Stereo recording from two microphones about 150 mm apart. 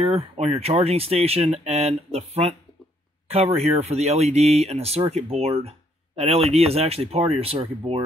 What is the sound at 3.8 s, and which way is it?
Speech, 45° right (ahead or behind).